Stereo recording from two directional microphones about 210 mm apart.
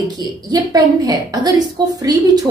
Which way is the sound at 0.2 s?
20° right (ahead or behind).